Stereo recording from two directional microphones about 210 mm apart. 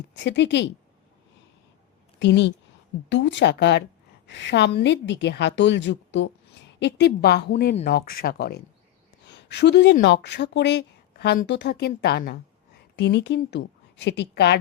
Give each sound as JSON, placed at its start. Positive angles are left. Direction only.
{"t": 0.2, "sound": "a woman's voice", "side_deg": 55}
{"t": 2.1, "sound": "a woman's voice", "side_deg": 55}